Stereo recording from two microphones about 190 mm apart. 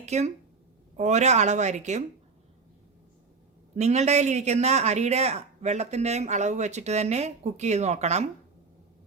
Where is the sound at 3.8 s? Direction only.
35° right (ahead or behind).